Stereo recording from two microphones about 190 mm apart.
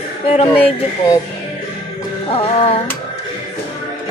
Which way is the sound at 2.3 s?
30° left (ahead or behind).